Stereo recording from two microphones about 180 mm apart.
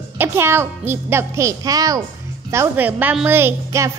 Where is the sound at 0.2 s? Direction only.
15° right (ahead or behind).